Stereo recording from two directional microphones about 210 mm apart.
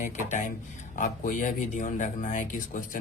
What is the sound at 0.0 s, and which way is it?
Speech, 35° left (ahead or behind).